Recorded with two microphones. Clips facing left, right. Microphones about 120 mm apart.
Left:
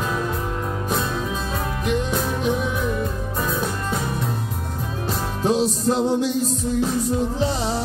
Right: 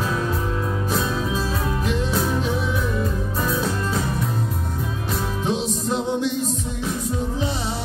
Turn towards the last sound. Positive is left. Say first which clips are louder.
# left 4 dB
turn(degrees=40)  # may be behind; listen again after turning